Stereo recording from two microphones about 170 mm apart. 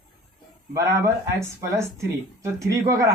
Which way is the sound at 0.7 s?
20° right (ahead or behind).